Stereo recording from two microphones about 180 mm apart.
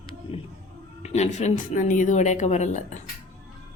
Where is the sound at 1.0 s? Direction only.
35° left (ahead or behind).